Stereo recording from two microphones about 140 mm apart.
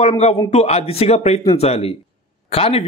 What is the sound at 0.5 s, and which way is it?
A man's voice, 50° left (ahead or behind).